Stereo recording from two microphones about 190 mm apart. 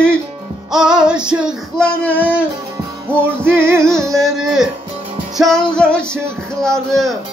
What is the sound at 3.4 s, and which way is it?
Music, 10° right (ahead or behind).